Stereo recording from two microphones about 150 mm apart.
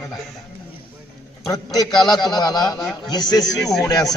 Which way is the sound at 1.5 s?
25° left (ahead or behind).